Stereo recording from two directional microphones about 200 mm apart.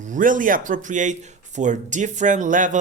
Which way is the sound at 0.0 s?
40° right (ahead or behind).